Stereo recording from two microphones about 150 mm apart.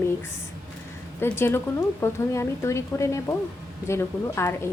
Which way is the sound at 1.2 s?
15° left (ahead or behind).